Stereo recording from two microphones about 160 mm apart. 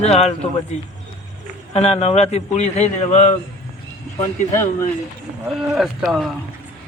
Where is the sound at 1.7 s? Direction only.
40° left (ahead or behind).